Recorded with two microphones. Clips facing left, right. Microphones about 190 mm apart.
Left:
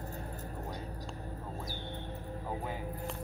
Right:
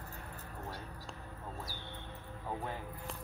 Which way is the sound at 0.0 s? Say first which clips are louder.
Left 6 dB; 35° left (ahead or behind).